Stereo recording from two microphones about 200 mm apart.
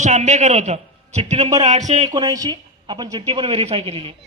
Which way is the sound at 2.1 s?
20° right (ahead or behind).